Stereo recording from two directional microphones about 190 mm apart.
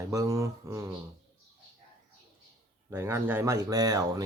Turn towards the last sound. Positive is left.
turn(degrees=-20)  # may be behind; listen again after turning